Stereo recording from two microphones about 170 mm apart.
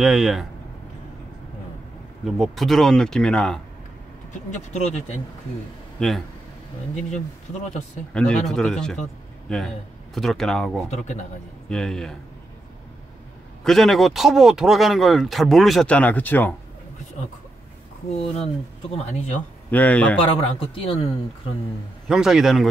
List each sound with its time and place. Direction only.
0.0 s speech: centre (ahead or behind)
2.2 s speech: centre (ahead or behind)
4.3 s a woman's voice: 45° left (ahead or behind)
5.9 s speech: centre (ahead or behind)
8.1 s speech: 5° left (ahead or behind)
13.7 s speech: centre (ahead or behind)
18.9 s a woman's voice: 40° left (ahead or behind)
19.7 s speech: 10° left (ahead or behind)
20.2 s a woman's voice: 35° left (ahead or behind)
22.0 s speech: 5° right (ahead or behind)